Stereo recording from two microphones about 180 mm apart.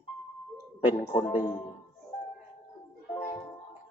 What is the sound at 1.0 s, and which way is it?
Speech, 30° left (ahead or behind).